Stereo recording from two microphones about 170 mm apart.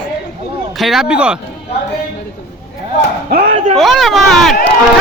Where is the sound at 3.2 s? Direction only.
60° right (ahead or behind).